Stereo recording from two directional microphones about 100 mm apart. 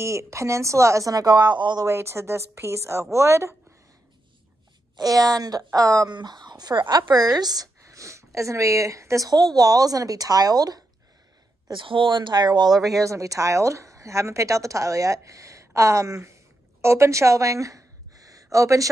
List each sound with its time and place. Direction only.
0.0 s speech: 30° right (ahead or behind); by 1.9 s 45° right (ahead or behind)
1.9 s a woman's voice: 25° right (ahead or behind)
4.9 s speech: 35° right (ahead or behind)
6.1 s speech: 45° right (ahead or behind)
11.7 s speech: 55° right (ahead or behind)
12.9 s a woman's voice: 30° right (ahead or behind)